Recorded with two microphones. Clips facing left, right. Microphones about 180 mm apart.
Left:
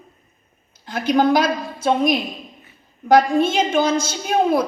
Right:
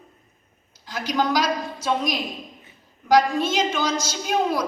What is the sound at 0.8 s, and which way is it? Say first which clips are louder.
A woman's voice: left 7 dB; 55° left (ahead or behind).